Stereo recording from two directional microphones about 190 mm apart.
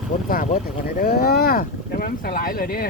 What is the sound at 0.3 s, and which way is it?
Speech, 50° left (ahead or behind).